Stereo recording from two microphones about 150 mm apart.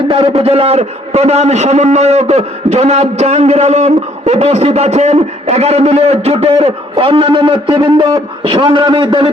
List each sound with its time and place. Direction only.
0.1 s a man's voice: 40° right (ahead or behind)